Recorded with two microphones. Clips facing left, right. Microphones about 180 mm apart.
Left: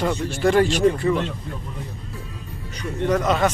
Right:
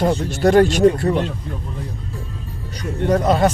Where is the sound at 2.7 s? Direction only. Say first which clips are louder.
Right 3 dB; 35° right (ahead or behind).